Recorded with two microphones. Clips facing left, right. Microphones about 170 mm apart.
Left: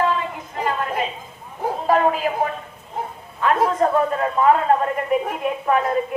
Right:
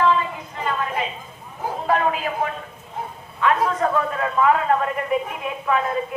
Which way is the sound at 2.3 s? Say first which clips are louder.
Left 4 dB; 35° left (ahead or behind).